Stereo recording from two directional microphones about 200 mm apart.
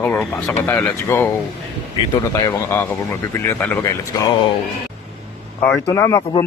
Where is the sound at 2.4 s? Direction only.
15° left (ahead or behind).